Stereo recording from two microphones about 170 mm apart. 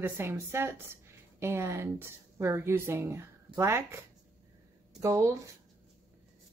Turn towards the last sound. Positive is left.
turn(degrees=-20)  # may be behind; listen again after turning